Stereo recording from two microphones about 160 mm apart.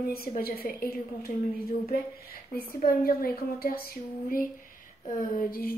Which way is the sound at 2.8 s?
65° left (ahead or behind).